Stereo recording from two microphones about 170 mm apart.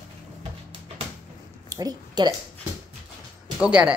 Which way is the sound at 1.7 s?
20° right (ahead or behind).